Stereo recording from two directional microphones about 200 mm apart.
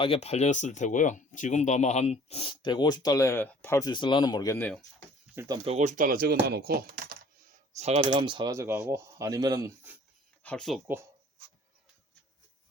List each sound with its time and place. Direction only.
0.0 s speech: 30° left (ahead or behind); by 4.8 s 10° left (ahead or behind)
5.3 s speech: 10° right (ahead or behind)
5.6 s speech: 35° right (ahead or behind)
7.8 s speech: 30° right (ahead or behind)
8.0 s speech: 20° right (ahead or behind)
10.4 s speech: 5° left (ahead or behind)